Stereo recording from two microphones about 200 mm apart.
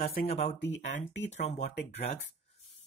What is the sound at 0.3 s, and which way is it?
Speech, 30° left (ahead or behind).